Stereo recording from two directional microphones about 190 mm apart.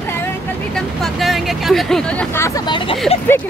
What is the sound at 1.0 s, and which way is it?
Speech, centre (ahead or behind).